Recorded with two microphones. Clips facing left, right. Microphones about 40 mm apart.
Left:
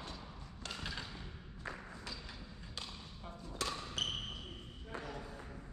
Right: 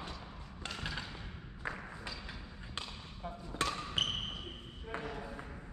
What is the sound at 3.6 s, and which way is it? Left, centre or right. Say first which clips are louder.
Music: right 5 dB; right.